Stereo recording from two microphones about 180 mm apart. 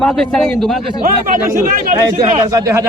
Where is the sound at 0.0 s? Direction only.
5° left (ahead or behind).